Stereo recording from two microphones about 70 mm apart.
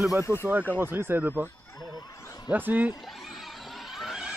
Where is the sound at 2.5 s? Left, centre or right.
Right.